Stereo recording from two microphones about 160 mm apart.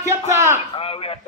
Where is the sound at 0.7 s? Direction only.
35° left (ahead or behind).